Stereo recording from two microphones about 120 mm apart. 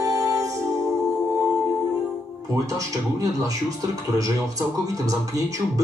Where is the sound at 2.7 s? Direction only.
30° right (ahead or behind).